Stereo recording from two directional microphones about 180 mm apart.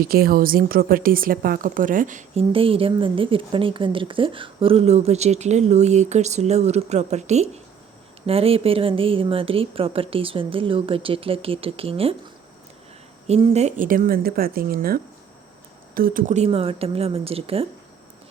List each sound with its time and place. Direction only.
0.0 s a woman's voice: 55° right (ahead or behind)
2.5 s a woman's voice: 30° right (ahead or behind)
13.2 s a woman's voice: 35° right (ahead or behind)